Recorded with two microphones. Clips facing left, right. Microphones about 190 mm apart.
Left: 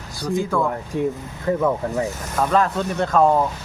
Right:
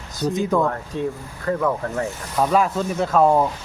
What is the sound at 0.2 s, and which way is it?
Speech, 20° right (ahead or behind).